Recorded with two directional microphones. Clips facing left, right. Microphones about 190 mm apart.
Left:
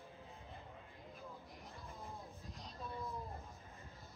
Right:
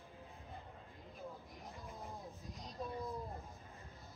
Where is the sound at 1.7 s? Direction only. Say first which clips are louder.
Right 2 dB; 15° right (ahead or behind).